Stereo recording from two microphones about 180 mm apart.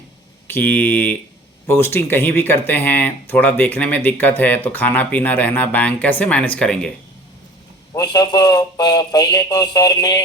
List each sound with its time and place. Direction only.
0.4 s speech: 10° left (ahead or behind)
7.9 s speech: 20° left (ahead or behind)